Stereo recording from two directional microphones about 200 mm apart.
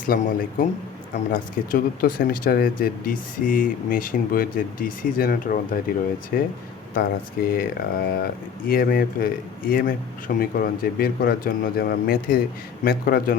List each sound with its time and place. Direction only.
0.1 s speech: 45° left (ahead or behind)
1.3 s speech: 45° left (ahead or behind)